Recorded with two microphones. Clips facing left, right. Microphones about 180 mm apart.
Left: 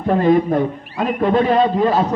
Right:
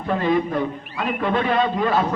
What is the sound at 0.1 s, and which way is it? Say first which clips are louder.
A man's voice: left 6 dB; 45° left (ahead or behind).